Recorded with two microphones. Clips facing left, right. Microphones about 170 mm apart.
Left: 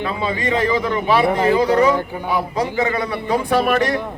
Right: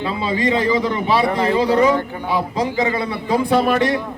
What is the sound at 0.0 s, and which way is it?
Speech, 25° right (ahead or behind).